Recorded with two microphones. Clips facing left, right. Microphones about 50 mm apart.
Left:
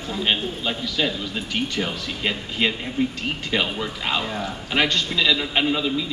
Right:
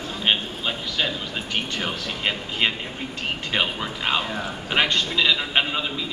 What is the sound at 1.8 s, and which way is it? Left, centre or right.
A man's voice, centre.